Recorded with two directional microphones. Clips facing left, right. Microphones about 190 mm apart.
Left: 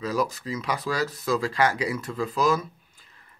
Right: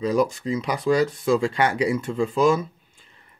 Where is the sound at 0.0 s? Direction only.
30° right (ahead or behind).